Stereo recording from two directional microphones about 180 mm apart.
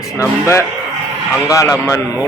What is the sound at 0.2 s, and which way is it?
Speech, 15° left (ahead or behind).